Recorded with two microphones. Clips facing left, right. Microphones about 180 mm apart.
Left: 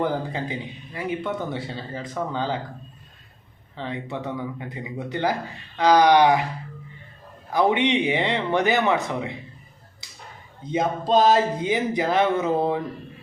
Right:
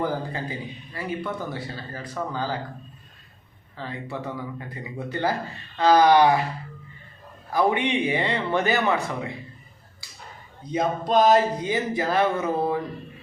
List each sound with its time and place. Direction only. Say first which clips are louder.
0.0 s speech: left 2 dB; 20° left (ahead or behind)
3.8 s speech: left 2 dB; 20° left (ahead or behind)
7.5 s speech: left 2 dB; 20° left (ahead or behind)
10.0 s finger snapping: right 1 dB; 20° left (ahead or behind)
10.6 s speech: left 1 dB; 25° left (ahead or behind)